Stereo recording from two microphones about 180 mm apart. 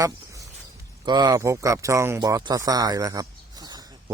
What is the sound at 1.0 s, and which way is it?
Speech, 25° right (ahead or behind).